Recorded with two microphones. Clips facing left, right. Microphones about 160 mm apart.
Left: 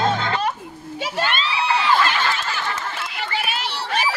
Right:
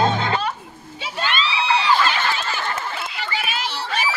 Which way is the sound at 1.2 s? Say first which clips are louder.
Even; 50° left (ahead or behind).